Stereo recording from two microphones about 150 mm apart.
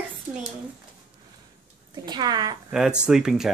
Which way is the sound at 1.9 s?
30° right (ahead or behind).